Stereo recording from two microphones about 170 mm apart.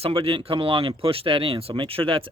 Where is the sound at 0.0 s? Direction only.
35° right (ahead or behind).